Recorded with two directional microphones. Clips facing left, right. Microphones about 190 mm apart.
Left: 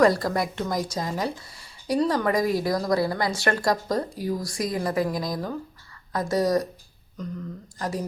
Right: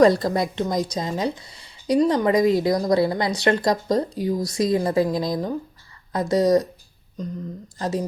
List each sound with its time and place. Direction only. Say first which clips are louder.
0.0 s a woman's voice: right 4 dB; 20° right (ahead or behind)
7.8 s a woman's voice: right 4 dB; 25° right (ahead or behind)